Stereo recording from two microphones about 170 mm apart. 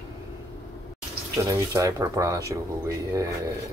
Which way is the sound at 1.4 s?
20° right (ahead or behind).